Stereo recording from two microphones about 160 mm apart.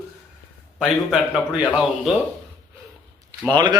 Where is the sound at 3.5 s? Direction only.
25° right (ahead or behind).